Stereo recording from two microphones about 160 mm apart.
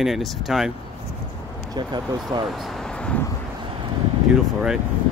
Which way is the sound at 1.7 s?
25° right (ahead or behind).